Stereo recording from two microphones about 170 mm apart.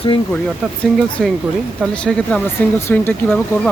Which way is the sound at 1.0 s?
Centre (ahead or behind).